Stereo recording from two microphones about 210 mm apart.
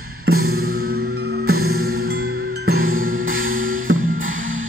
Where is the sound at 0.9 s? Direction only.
50° right (ahead or behind).